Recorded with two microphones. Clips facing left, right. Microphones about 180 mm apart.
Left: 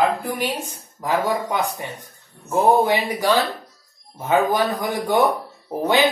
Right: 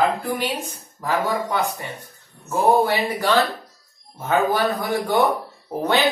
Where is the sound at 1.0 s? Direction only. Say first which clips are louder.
Left 1 dB; 15° left (ahead or behind).